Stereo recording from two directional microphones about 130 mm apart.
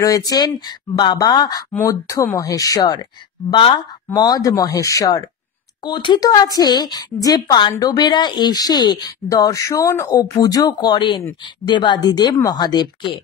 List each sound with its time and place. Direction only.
0.0 s speech: 25° left (ahead or behind)